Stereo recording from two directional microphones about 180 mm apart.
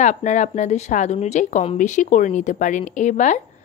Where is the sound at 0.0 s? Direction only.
40° left (ahead or behind).